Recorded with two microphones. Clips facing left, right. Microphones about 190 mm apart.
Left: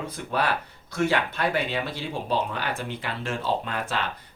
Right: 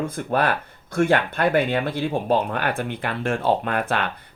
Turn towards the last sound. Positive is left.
turn(degrees=-55)  # may be behind; listen again after turning